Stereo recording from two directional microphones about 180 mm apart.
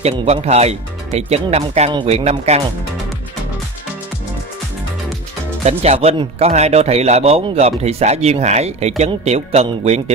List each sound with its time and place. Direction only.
0.0 s speech: 35° right (ahead or behind)
5.6 s speech: 35° right (ahead or behind)